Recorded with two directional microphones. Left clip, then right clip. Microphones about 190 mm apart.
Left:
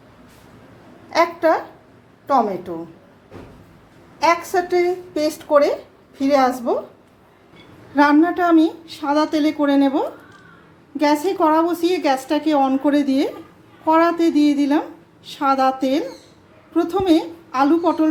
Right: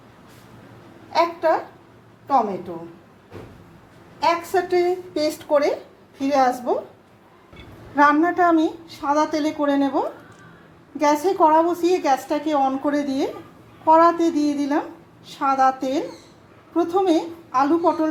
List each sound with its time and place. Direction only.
1.1 s a woman's voice: 35° left (ahead or behind)
4.5 s a woman's voice: 10° left (ahead or behind)
7.9 s a woman's voice: 25° left (ahead or behind)